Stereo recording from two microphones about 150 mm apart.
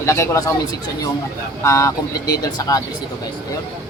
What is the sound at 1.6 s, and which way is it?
Speech, 20° left (ahead or behind).